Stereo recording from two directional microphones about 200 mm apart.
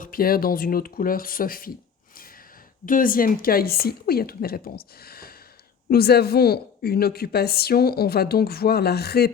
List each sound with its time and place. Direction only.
0.0 s a woman's voice: 45° left (ahead or behind)
2.8 s a woman's voice: 45° left (ahead or behind)